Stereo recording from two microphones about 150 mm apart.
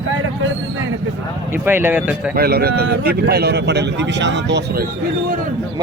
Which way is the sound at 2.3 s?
90° right.